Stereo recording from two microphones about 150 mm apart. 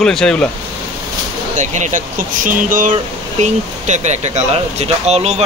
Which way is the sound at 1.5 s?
55° right (ahead or behind).